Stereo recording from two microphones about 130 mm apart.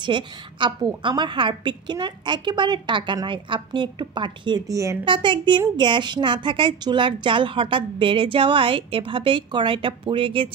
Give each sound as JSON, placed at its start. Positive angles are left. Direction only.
{"t": 0.0, "sound": "a woman's voice", "side_deg": -35}
{"t": 5.0, "sound": "a woman's voice", "side_deg": -40}